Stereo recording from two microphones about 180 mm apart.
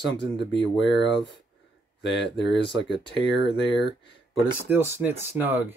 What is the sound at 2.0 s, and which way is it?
Speech, 75° left (ahead or behind).